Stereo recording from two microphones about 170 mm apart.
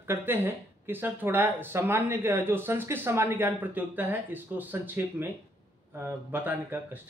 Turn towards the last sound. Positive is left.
turn(degrees=-10)  # may be behind; listen again after turning